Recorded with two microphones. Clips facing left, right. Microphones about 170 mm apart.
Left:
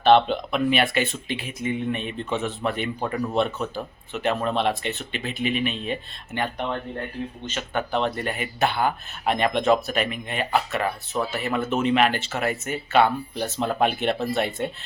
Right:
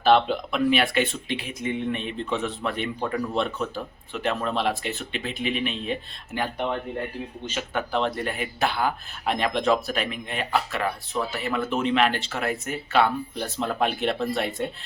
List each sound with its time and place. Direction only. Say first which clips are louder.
0.0 s speech: left 2 dB; centre (ahead or behind)
7.7 s speech: left 1 dB; centre (ahead or behind)